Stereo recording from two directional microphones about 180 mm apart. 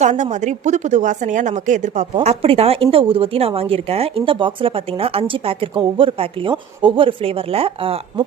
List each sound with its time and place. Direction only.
0.0 s a woman's voice: 40° right (ahead or behind)